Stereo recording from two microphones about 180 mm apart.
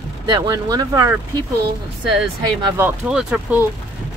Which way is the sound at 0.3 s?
20° right (ahead or behind).